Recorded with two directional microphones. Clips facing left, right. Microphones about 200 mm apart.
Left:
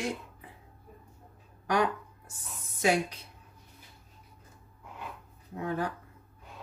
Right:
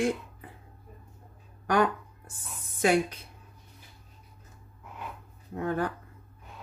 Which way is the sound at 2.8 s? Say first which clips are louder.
Right 3 dB; 55° right (ahead or behind).